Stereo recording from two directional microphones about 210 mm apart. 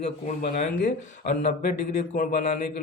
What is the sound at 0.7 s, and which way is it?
Speech, 55° left (ahead or behind).